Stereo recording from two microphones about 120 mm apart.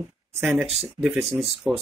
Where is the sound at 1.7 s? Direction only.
5° right (ahead or behind).